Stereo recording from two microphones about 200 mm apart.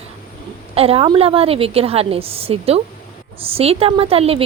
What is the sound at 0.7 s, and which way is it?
Speech, 30° right (ahead or behind).